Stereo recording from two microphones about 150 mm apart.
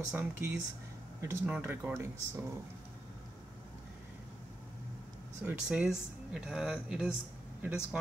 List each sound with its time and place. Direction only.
0.1 s speech: 15° right (ahead or behind)
5.4 s speech: 10° right (ahead or behind)